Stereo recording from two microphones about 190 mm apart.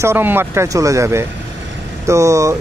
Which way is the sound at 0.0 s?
10° right (ahead or behind).